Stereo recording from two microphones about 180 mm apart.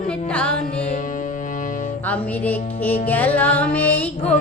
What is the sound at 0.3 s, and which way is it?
Music, 5° left (ahead or behind).